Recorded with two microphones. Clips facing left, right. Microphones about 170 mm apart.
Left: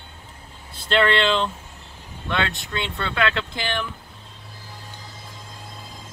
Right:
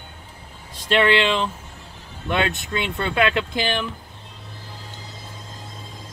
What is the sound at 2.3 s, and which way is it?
Speech, 20° right (ahead or behind).